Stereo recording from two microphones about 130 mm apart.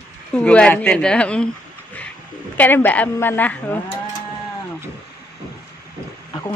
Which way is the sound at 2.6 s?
15° left (ahead or behind).